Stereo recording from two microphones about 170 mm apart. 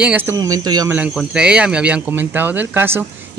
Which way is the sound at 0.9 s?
10° right (ahead or behind).